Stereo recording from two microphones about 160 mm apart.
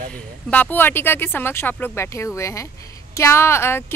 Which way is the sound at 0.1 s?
10° left (ahead or behind).